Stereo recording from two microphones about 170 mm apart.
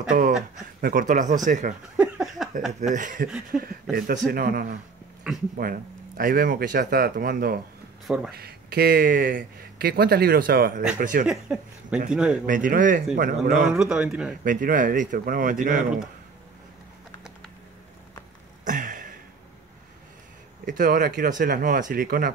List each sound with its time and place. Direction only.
0.7 s speech: 55° right (ahead or behind)
2.0 s a sound: centre (ahead or behind)
2.8 s speech: 50° right (ahead or behind)
3.5 s a man's voice: 5° right (ahead or behind)
4.3 s speech: 60° right (ahead or behind)
5.3 s speech: 5° right (ahead or behind)
5.6 s speech: 60° right (ahead or behind)
11.2 s a man's voice: 5° right (ahead or behind)
12.4 s speech: 50° right (ahead or behind)
13.7 s a man's voice: 5° right (ahead or behind)
14.4 s speech: 50° right (ahead or behind)
18.7 s a sound: 50° right (ahead or behind)
20.6 s speech: 50° right (ahead or behind)